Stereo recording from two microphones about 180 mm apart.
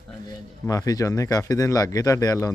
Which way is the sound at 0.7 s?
20° left (ahead or behind).